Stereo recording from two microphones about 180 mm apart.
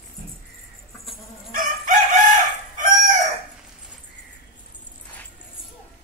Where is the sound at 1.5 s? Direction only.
45° right (ahead or behind).